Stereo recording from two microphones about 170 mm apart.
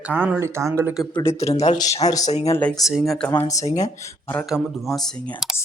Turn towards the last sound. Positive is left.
turn(degrees=0)  # may be behind; listen again after turning